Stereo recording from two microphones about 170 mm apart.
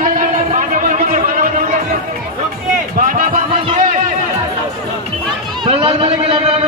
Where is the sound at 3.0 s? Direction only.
55° right (ahead or behind).